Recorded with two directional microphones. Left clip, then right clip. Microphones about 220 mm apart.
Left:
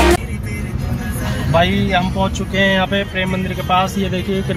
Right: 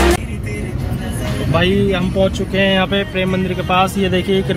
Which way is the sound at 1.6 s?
5° right (ahead or behind).